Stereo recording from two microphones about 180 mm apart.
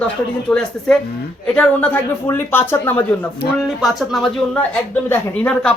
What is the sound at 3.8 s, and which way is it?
Speech, centre (ahead or behind).